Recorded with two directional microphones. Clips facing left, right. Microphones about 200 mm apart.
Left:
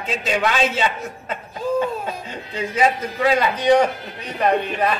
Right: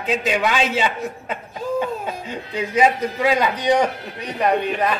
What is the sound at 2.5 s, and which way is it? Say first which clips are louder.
A man's voice: right 2 dB; 15° right (ahead or behind).